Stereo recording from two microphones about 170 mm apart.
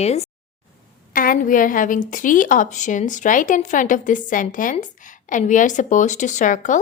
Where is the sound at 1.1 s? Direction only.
55° left (ahead or behind).